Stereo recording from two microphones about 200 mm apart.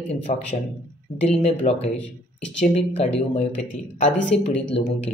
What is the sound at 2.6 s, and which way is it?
Speech, 35° left (ahead or behind).